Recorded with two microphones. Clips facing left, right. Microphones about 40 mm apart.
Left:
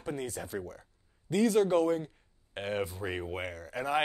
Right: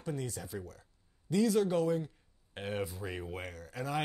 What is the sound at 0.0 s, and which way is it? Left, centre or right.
Speech, left.